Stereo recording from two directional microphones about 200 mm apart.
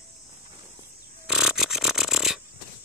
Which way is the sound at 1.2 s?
Centre (ahead or behind).